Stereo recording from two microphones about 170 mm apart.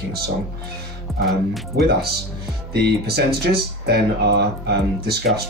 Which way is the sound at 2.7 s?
70° right (ahead or behind).